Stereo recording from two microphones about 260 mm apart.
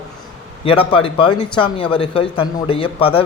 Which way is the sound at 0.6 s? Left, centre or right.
Left.